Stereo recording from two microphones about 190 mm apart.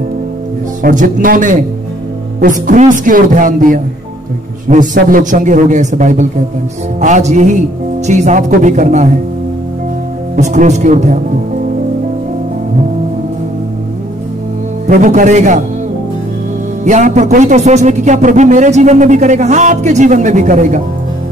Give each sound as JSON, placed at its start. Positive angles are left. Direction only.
{"t": 0.8, "sound": "a man's voice", "side_deg": -45}
{"t": 10.3, "sound": "speech", "side_deg": -40}
{"t": 14.9, "sound": "speech", "side_deg": -45}
{"t": 16.8, "sound": "speech", "side_deg": -40}